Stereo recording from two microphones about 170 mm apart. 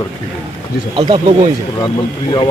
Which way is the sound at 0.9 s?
30° right (ahead or behind).